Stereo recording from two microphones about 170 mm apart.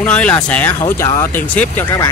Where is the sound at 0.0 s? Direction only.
10° left (ahead or behind).